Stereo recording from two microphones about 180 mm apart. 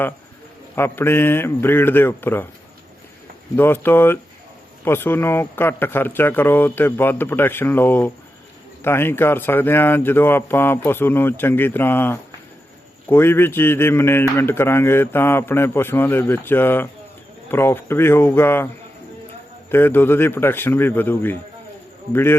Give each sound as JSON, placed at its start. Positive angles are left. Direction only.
{"t": 0.8, "sound": "a man's voice", "side_deg": 10}
{"t": 3.5, "sound": "a man's voice", "side_deg": 10}
{"t": 19.7, "sound": "a man's voice", "side_deg": 10}